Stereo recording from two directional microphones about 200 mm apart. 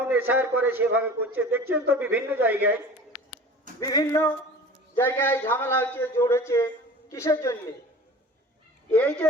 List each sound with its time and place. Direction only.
0.0 s a man's voice: 10° right (ahead or behind)
3.8 s a man's voice: 15° left (ahead or behind)
8.9 s a man's voice: 5° left (ahead or behind)